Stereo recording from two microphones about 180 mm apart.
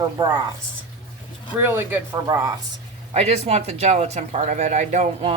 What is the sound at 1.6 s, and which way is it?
Speech, 10° right (ahead or behind).